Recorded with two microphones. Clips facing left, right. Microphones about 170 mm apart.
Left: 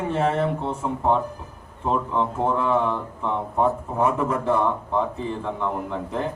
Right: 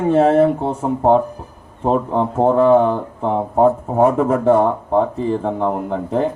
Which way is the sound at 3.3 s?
55° right (ahead or behind).